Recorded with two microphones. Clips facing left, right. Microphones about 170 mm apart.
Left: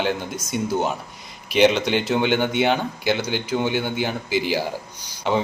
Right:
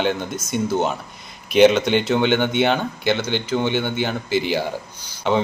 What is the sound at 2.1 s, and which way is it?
Speech, 10° left (ahead or behind).